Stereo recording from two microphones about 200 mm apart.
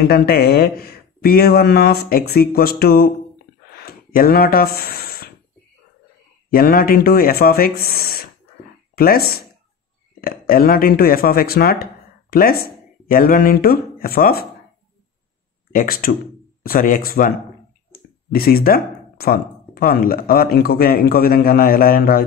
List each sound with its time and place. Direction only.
0.0 s speech: 50° left (ahead or behind)
3.7 s a sound: 50° left (ahead or behind)
6.5 s speech: 45° left (ahead or behind)
15.7 s speech: 45° left (ahead or behind)
18.3 s speech: 50° left (ahead or behind)